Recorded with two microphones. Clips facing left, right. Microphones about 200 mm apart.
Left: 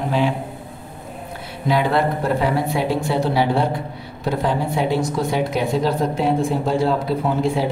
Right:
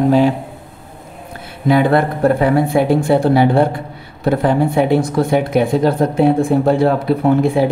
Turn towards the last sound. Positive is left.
turn(degrees=-60)  # may be behind; listen again after turning